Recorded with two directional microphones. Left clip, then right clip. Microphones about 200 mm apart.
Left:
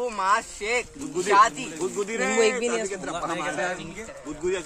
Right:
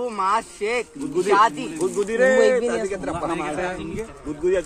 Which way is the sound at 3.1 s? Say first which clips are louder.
Left 1 dB; 10° left (ahead or behind).